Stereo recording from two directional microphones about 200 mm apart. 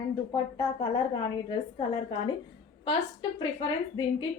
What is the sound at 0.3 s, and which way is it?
A woman's voice, 25° left (ahead or behind).